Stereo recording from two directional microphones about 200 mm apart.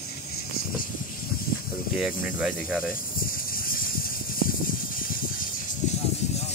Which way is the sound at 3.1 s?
45° left (ahead or behind).